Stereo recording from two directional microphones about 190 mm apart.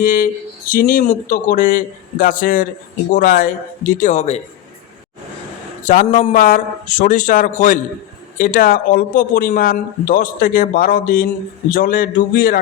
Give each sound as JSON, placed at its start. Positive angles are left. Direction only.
{"t": 0.0, "sound": "a man's voice", "side_deg": 45}
{"t": 5.8, "sound": "a man's voice", "side_deg": 40}